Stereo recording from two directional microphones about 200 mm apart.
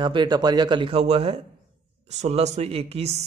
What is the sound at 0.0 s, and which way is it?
Speech, 20° right (ahead or behind).